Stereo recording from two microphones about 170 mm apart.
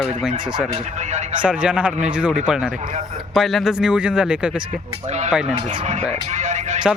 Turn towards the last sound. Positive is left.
turn(degrees=-45)  # may be behind; listen again after turning